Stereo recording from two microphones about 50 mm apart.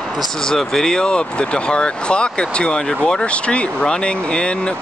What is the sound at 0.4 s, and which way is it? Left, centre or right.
Speech, centre.